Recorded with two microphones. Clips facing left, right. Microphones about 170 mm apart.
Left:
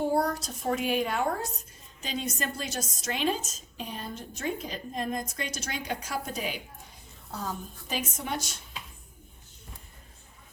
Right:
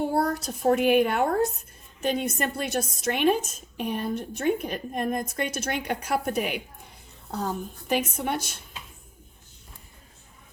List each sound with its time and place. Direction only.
0.1 s a woman's voice: 60° right (ahead or behind)
7.9 s a woman's voice: 60° right (ahead or behind)